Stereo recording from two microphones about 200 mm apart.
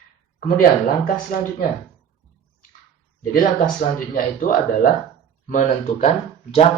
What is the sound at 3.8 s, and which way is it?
Speech, 45° left (ahead or behind).